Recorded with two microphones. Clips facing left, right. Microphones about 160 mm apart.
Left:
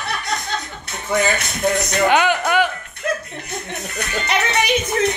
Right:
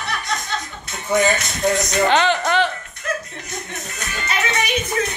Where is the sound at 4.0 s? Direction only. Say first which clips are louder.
Left 3 dB; 65° left (ahead or behind).